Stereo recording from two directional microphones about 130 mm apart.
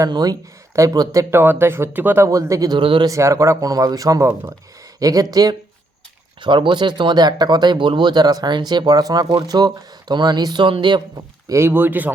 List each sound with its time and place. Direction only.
0.0 s speech: 30° right (ahead or behind)
3.1 s speech: 25° right (ahead or behind)
11.4 s speech: 20° right (ahead or behind)